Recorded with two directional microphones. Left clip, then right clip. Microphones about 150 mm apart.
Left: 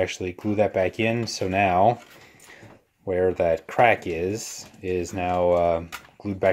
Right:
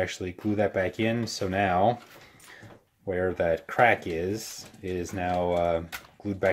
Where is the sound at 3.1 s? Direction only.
30° left (ahead or behind).